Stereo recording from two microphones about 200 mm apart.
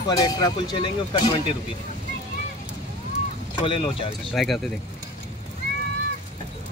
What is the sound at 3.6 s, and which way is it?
Speech, 25° left (ahead or behind).